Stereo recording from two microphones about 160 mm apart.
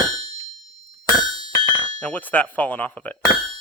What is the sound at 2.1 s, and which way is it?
Speech, 10° left (ahead or behind).